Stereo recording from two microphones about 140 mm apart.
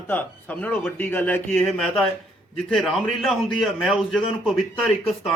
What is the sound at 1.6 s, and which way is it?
A man's voice, centre (ahead or behind).